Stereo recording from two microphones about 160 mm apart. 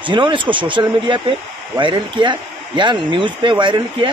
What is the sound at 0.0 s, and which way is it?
Speech, 30° right (ahead or behind).